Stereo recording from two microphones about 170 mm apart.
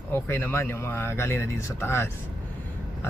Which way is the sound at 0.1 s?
15° left (ahead or behind).